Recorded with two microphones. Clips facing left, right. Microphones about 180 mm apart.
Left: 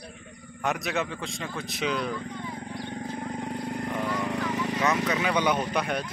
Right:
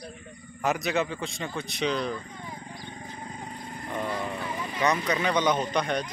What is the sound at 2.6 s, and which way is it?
Wild animals, 65° left (ahead or behind).